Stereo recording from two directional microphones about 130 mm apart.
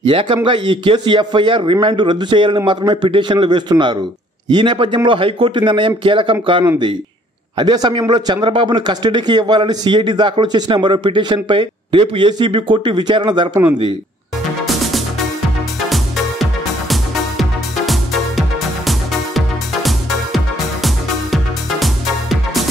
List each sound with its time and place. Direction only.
0.0 s a man's voice: 40° right (ahead or behind)
7.5 s a man's voice: 30° right (ahead or behind)
15.9 s music: centre (ahead or behind)